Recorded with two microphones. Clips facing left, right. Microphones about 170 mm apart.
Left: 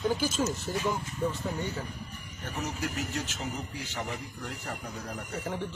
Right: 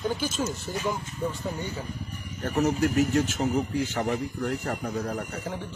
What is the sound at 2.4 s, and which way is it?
Speech, 55° right (ahead or behind).